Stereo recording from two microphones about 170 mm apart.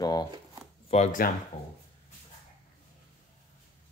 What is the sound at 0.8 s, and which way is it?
Speech, 40° left (ahead or behind).